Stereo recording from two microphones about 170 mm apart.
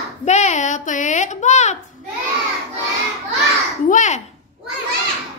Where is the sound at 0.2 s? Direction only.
40° left (ahead or behind).